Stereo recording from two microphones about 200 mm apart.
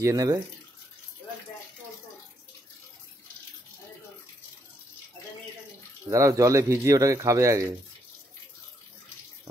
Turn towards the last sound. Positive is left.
turn(degrees=-15)  # may be behind; listen again after turning